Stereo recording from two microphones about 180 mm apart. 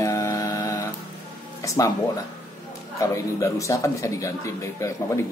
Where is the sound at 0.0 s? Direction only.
15° left (ahead or behind).